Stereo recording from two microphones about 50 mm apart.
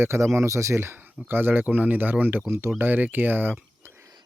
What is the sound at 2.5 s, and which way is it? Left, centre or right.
Speech, right.